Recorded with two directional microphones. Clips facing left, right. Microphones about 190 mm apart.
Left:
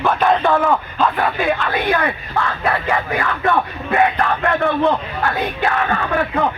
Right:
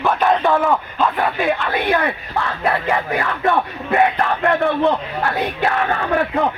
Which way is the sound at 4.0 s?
20° right (ahead or behind).